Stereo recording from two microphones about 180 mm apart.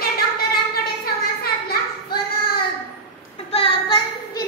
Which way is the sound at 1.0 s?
60° left (ahead or behind).